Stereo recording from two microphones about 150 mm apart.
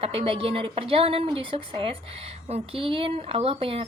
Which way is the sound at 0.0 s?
40° right (ahead or behind).